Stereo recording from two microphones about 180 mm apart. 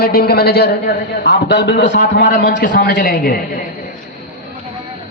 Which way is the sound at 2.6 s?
55° left (ahead or behind).